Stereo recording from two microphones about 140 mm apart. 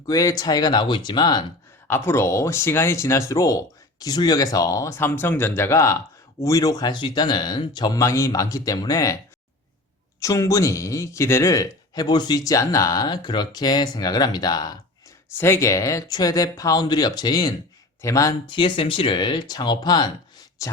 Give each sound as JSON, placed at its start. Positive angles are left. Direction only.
{"t": 0.1, "sound": "speech", "side_deg": 25}
{"t": 1.9, "sound": "speech", "side_deg": 15}
{"t": 10.2, "sound": "speech", "side_deg": 20}
{"t": 15.4, "sound": "speech", "side_deg": 20}